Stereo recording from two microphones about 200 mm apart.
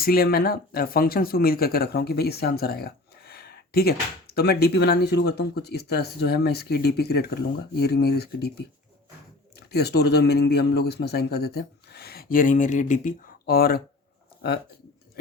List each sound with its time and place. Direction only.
0.0 s speech: 50° left (ahead or behind)